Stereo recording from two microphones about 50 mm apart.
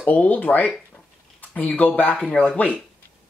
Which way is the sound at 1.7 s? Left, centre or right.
Left.